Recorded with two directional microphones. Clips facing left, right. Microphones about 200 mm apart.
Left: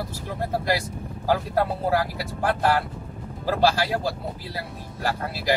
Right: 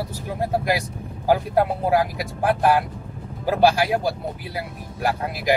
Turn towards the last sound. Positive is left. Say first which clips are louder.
# right 3 dB
turn(degrees=-15)  # may be behind; listen again after turning